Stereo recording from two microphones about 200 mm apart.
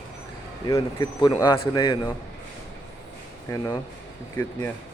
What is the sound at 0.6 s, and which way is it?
A man's voice, 20° left (ahead or behind).